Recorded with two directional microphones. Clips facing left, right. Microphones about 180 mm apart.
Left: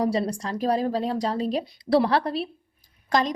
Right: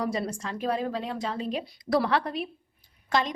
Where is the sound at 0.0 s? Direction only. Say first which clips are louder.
Left 5 dB; 30° left (ahead or behind).